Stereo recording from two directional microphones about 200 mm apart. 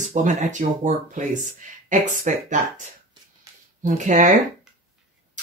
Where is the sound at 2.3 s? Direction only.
40° right (ahead or behind).